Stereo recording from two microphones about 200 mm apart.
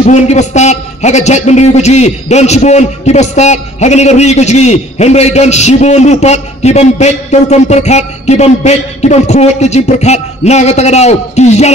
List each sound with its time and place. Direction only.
0.0 s a man's voice: 35° left (ahead or behind)